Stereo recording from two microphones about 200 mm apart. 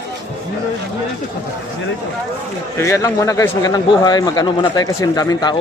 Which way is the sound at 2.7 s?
15° left (ahead or behind).